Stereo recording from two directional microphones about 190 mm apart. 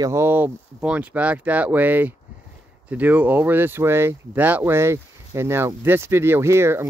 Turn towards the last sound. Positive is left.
turn(degrees=-15)  # may be behind; listen again after turning